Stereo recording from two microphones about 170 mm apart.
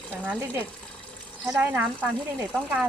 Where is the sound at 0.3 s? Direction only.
15° right (ahead or behind).